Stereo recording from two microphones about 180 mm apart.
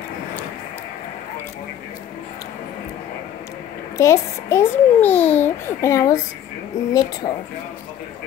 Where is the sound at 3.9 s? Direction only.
15° left (ahead or behind).